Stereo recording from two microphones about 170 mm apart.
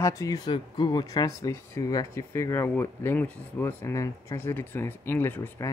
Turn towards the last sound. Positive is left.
turn(degrees=15)  # may be behind; listen again after turning